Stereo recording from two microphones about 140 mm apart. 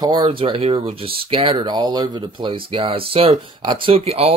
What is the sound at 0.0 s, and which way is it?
Speech, 35° right (ahead or behind).